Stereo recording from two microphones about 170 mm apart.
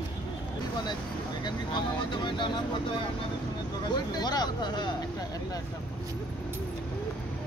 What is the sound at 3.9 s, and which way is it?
Speech, 25° left (ahead or behind).